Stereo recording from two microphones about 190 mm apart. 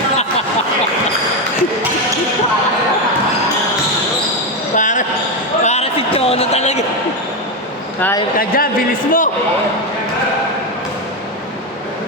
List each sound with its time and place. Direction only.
4.7 s basketball bounce: 40° left (ahead or behind)
5.6 s a sound: 35° left (ahead or behind)
8.4 s a man's voice: 50° left (ahead or behind)